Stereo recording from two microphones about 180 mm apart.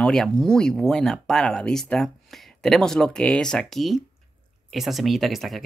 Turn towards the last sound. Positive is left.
turn(degrees=0)  # may be behind; listen again after turning